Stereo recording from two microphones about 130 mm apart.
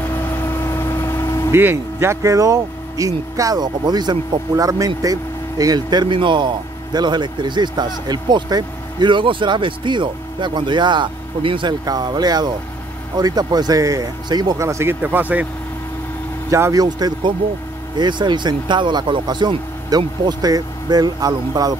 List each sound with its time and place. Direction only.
0.0 s vehicle: 20° left (ahead or behind)
1.5 s speech: 15° right (ahead or behind)
16.4 s speech: 25° right (ahead or behind)